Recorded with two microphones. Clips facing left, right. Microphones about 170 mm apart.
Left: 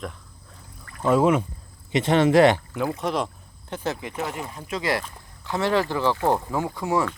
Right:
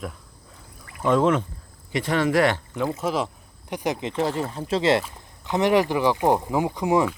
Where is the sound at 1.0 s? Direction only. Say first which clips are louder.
Left 1 dB; 10° left (ahead or behind).